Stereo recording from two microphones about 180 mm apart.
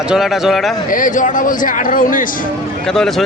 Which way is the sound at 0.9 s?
45° left (ahead or behind).